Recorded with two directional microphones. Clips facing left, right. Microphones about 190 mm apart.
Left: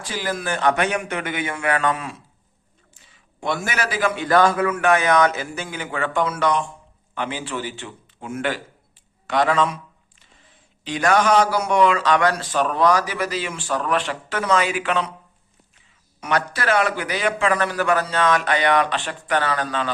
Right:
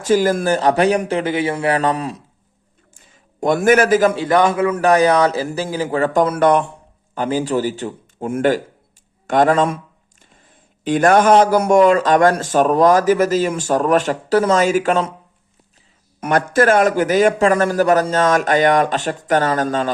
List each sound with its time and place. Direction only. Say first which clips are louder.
0.0 s a man's voice: right 12 dB; 45° right (ahead or behind)
2.9 s a sound: right 6 dB; 45° right (ahead or behind)
4.3 s a man's voice: left 2 dB; 20° right (ahead or behind)
4.7 s a man's voice: right 5 dB; 35° right (ahead or behind); by 6.7 s 60° right (ahead or behind)
7.1 s a man's voice: right 9 dB; 40° right (ahead or behind)
16.2 s speech: right 8 dB; 50° right (ahead or behind)